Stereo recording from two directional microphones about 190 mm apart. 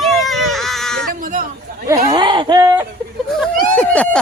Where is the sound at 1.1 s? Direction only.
45° right (ahead or behind).